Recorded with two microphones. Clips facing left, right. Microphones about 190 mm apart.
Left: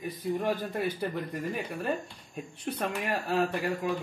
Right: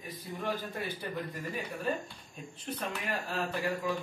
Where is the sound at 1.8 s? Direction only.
70° left (ahead or behind).